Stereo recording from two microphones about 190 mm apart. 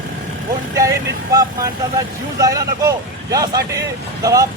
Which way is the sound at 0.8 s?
15° right (ahead or behind).